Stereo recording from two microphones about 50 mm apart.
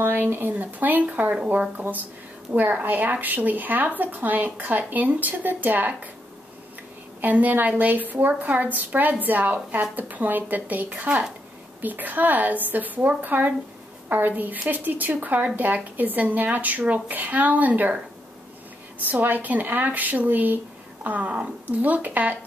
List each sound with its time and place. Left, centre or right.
0.0 s speech: right
7.2 s speech: right
19.0 s speech: right